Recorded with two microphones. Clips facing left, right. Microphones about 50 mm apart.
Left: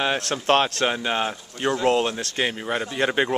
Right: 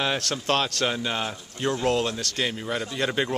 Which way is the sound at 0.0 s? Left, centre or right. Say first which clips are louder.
Left 3 dB; left.